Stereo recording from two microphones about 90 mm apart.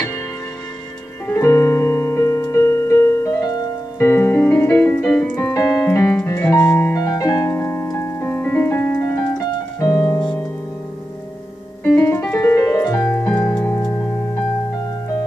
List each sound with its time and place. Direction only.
1.2 s piano: 30° left (ahead or behind)
4.0 s music: 30° left (ahead or behind)
6.2 s piano: 30° left (ahead or behind)
6.9 s piano: 35° left (ahead or behind)
11.8 s music: 15° left (ahead or behind)
12.1 s music: 30° left (ahead or behind)
13.1 s music: 20° left (ahead or behind)